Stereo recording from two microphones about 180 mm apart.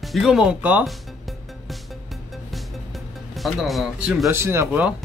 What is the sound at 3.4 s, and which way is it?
Speech, centre (ahead or behind).